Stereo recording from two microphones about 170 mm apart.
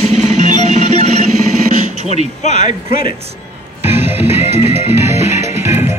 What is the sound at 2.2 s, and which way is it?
Speech, 45° left (ahead or behind).